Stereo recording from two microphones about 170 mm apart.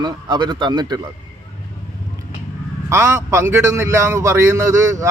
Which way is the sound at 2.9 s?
15° right (ahead or behind).